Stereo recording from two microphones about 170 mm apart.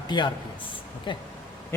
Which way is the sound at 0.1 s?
25° left (ahead or behind).